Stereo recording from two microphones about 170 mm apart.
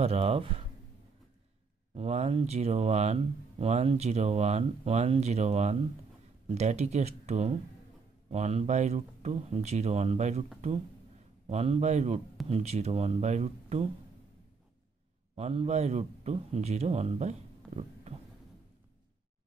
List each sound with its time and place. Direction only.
0.0 s speech: 35° right (ahead or behind)
2.0 s speech: 40° right (ahead or behind)
11.4 s speech: 40° right (ahead or behind)
15.3 s a man's voice: 40° right (ahead or behind)